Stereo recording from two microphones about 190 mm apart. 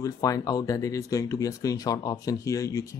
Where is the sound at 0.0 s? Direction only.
20° left (ahead or behind).